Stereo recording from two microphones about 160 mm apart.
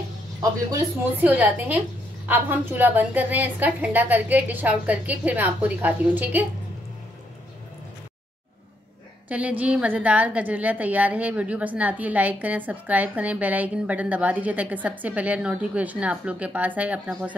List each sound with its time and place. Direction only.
0.4 s speech: 20° right (ahead or behind)
1.1 s a woman's voice: 10° right (ahead or behind)
9.3 s a woman's voice: 10° right (ahead or behind)